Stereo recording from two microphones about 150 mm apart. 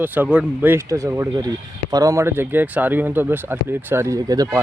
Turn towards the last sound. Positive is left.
turn(degrees=-25)  # may be behind; listen again after turning